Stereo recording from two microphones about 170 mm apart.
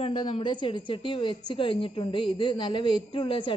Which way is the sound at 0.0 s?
30° left (ahead or behind).